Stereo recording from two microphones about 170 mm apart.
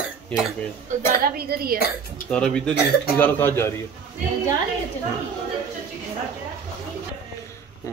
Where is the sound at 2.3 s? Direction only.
5° left (ahead or behind).